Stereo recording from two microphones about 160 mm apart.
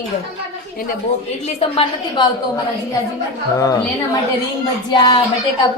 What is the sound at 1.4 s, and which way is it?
Speech, 40° left (ahead or behind).